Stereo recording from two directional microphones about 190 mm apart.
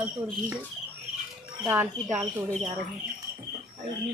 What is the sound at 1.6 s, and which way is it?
Speech, 10° right (ahead or behind).